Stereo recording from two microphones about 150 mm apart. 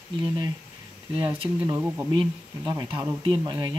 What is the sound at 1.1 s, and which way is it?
Speech, 15° right (ahead or behind).